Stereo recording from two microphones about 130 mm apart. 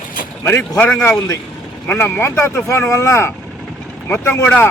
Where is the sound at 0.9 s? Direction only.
5° left (ahead or behind).